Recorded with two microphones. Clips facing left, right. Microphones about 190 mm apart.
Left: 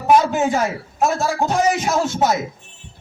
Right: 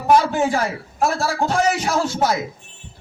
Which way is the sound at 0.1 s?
20° left (ahead or behind).